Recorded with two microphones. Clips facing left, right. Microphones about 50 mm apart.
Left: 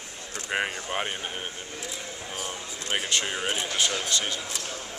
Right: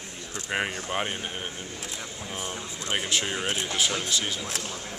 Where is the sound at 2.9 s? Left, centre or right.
Centre.